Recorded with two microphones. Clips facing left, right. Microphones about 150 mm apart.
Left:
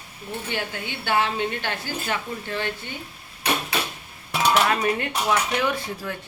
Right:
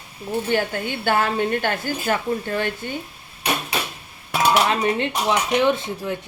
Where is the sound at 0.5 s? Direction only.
50° right (ahead or behind).